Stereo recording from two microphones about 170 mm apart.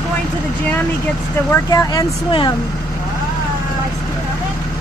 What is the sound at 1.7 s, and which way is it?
Speech, 20° left (ahead or behind).